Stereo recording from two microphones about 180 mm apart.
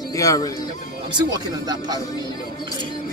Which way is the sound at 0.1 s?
20° left (ahead or behind).